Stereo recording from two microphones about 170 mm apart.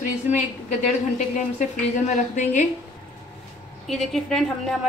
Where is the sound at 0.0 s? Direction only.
45° left (ahead or behind).